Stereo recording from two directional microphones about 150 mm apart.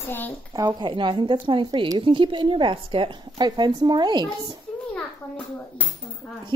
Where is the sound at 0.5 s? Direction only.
30° right (ahead or behind).